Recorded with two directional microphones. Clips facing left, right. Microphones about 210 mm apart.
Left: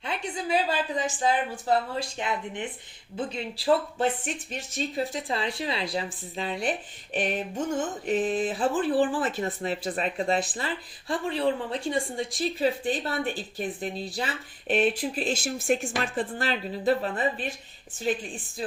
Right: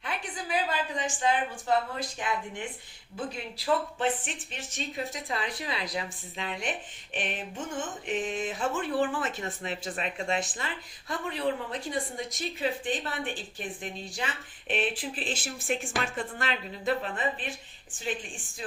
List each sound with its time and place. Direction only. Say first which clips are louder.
0.0 s a woman's voice: left 5 dB; 25° left (ahead or behind)